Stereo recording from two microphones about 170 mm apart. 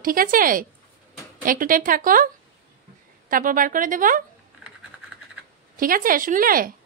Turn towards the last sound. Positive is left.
turn(degrees=-55)  # may be behind; listen again after turning